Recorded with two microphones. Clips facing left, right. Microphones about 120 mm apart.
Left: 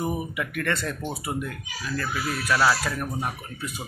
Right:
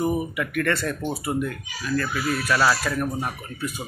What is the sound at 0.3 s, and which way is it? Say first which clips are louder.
Speech: right 4 dB; 20° left (ahead or behind).